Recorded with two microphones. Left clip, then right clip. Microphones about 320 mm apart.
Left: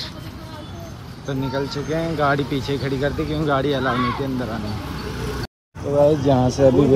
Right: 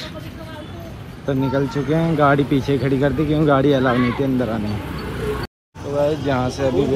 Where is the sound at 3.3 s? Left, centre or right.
Right.